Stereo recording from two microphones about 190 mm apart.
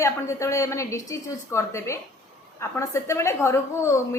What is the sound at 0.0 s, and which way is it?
A woman's voice, 15° left (ahead or behind).